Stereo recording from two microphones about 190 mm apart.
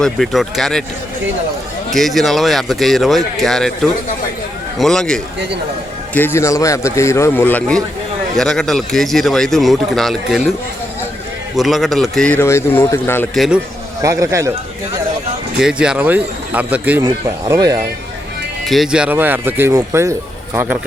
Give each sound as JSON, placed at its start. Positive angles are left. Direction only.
{"t": 0.0, "sound": "speech", "side_deg": 0}
{"t": 1.9, "sound": "speech", "side_deg": 0}
{"t": 4.8, "sound": "a man's voice", "side_deg": 5}
{"t": 11.5, "sound": "a man's voice", "side_deg": 0}
{"t": 13.3, "sound": "speech", "side_deg": 0}
{"t": 14.0, "sound": "speech", "side_deg": -15}
{"t": 15.5, "sound": "speech", "side_deg": -5}
{"t": 17.0, "sound": "speech", "side_deg": -20}
{"t": 18.6, "sound": "speech", "side_deg": 0}